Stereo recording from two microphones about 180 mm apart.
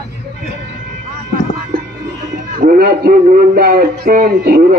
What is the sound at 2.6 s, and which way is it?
A man's voice, 50° right (ahead or behind).